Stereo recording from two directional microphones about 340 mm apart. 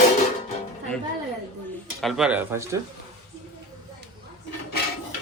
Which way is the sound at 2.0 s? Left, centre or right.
Centre.